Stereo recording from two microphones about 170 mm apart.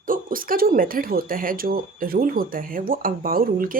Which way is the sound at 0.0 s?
55° right (ahead or behind).